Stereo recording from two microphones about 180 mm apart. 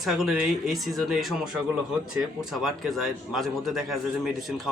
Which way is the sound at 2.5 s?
Centre (ahead or behind).